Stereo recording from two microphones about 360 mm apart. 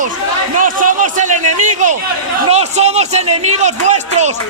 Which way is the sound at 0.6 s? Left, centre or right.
Right.